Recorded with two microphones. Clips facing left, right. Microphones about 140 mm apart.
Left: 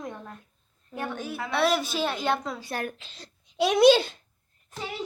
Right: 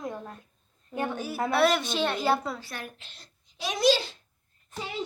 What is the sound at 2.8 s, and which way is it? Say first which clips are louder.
A child's voice: left 8 dB; 65° left (ahead or behind).